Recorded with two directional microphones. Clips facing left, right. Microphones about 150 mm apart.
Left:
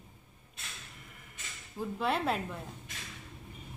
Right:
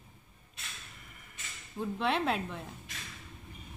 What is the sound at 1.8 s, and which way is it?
Speech, 5° left (ahead or behind).